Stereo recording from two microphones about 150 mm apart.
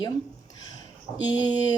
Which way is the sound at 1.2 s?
25° left (ahead or behind).